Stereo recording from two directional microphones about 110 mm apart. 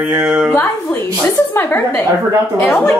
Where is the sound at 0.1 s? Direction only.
10° right (ahead or behind).